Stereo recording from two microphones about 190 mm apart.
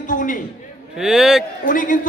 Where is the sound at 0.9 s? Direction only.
5° right (ahead or behind).